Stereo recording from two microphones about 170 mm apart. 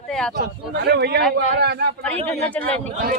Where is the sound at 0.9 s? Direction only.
75° right (ahead or behind).